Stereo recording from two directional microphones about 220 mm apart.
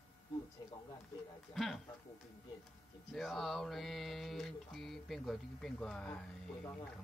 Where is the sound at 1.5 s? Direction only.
Centre (ahead or behind).